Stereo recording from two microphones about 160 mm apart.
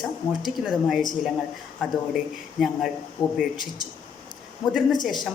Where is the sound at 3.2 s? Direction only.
30° left (ahead or behind).